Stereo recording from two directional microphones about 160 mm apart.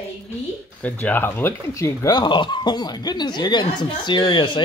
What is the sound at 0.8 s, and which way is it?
Speech, 10° left (ahead or behind).